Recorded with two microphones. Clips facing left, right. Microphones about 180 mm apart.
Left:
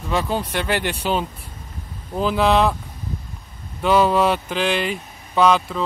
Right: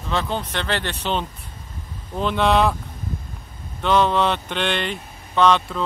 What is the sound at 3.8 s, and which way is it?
Speech, 5° left (ahead or behind).